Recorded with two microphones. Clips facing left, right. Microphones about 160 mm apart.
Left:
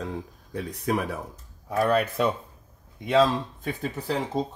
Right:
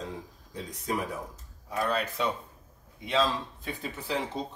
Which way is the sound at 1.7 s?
50° left (ahead or behind).